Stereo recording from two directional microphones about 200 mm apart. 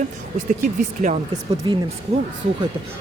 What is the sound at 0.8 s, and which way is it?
Speech, 40° right (ahead or behind).